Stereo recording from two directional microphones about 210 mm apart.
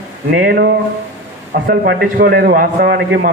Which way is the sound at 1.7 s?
50° right (ahead or behind).